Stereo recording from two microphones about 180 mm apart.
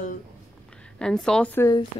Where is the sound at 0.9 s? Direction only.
5° left (ahead or behind).